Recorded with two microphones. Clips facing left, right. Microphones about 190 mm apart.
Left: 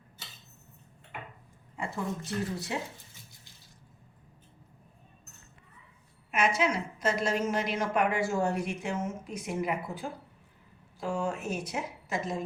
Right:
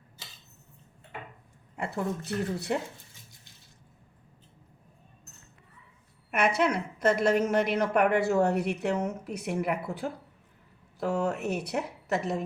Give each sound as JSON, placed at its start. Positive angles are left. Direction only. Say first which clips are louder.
{"t": 1.7, "sound": "a woman's voice", "louder": "right 3 dB", "side_deg": -60}
{"t": 6.3, "sound": "a woman's voice", "louder": "right 2 dB", "side_deg": -60}